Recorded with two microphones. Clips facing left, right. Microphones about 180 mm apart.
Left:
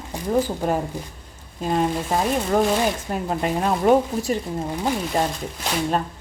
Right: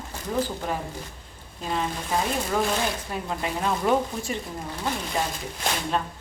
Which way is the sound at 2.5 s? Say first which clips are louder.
Left 6 dB; 45° left (ahead or behind).